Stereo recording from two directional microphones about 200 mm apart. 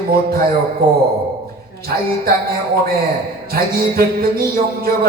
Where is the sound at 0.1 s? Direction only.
50° right (ahead or behind).